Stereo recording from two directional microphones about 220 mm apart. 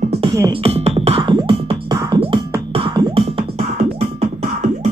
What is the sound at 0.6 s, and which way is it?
Music, 30° right (ahead or behind).